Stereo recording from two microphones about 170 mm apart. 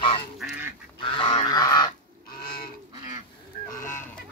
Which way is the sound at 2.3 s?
60° left (ahead or behind).